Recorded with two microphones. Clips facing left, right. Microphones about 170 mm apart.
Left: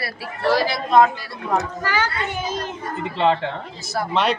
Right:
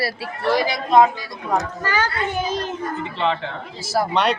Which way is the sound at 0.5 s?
15° right (ahead or behind).